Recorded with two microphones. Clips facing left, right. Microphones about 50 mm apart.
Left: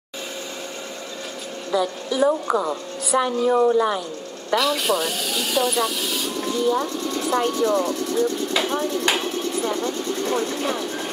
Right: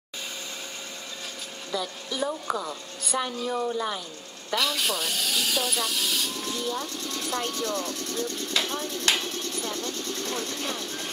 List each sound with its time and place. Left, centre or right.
1.7 s a woman's voice: centre
2.4 s a woman's voice: left
3.1 s speech: centre
4.6 s speech: centre